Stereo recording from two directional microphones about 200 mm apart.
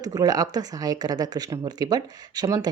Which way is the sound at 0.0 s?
20° right (ahead or behind).